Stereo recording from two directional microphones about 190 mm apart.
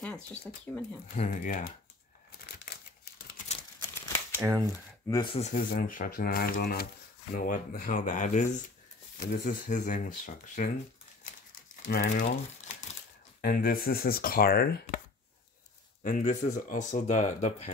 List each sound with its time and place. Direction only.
0.0 s speech: 5° left (ahead or behind)
1.1 s speech: 45° left (ahead or behind)
4.4 s speech: 15° right (ahead or behind)
5.0 s speech: 20° left (ahead or behind); by 10.7 s 45° left (ahead or behind)
11.7 s speech: 40° left (ahead or behind)
13.4 s speech: 50° left (ahead or behind)
16.0 s speech: 40° left (ahead or behind)